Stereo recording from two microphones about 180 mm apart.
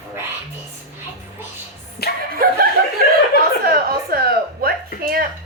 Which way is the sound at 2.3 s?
55° right (ahead or behind).